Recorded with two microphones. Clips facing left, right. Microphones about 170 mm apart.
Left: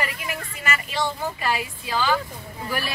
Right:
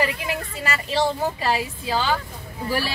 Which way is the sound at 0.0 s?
30° right (ahead or behind).